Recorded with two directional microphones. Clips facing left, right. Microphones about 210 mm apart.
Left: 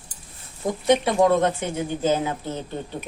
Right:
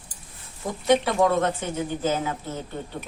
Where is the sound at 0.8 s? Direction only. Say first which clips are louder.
Left 2 dB; 15° left (ahead or behind).